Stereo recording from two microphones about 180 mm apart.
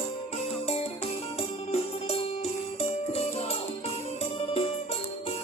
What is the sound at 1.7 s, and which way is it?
Music, 35° left (ahead or behind).